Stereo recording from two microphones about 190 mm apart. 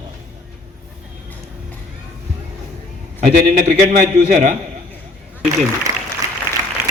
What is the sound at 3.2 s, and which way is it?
A man's voice, 45° right (ahead or behind).